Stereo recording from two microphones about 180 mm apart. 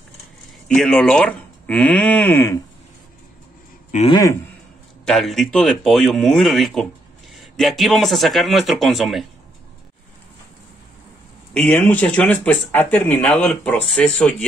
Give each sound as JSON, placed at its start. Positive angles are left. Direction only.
{"t": 0.7, "sound": "speech", "side_deg": 5}
{"t": 4.1, "sound": "a man's voice", "side_deg": 20}
{"t": 5.0, "sound": "speech", "side_deg": 0}
{"t": 11.5, "sound": "speech", "side_deg": 5}